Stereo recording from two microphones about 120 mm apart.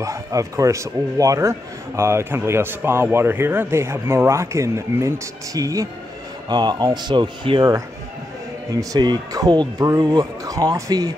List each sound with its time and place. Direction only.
0.0 s speech: 25° right (ahead or behind)
8.7 s speech: 35° right (ahead or behind)